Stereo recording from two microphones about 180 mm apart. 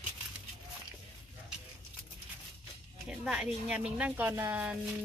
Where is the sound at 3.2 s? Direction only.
5° right (ahead or behind).